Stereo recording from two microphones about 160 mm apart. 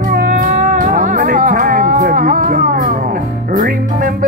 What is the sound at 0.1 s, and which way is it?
Music, 60° right (ahead or behind).